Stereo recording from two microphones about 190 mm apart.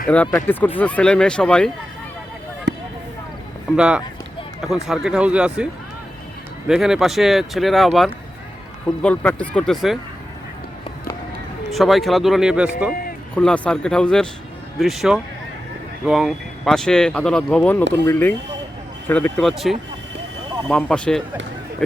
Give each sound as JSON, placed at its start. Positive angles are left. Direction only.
{"t": 0.1, "sound": "speech", "side_deg": 10}
{"t": 2.7, "sound": "basketball bounce", "side_deg": -60}
{"t": 3.8, "sound": "speech", "side_deg": -5}
{"t": 6.7, "sound": "speech", "side_deg": -5}
{"t": 9.0, "sound": "speech", "side_deg": 5}
{"t": 11.7, "sound": "speech", "side_deg": 0}